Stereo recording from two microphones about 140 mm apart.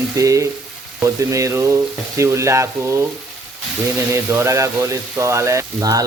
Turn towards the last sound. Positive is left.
turn(degrees=-25)  # may be behind; listen again after turning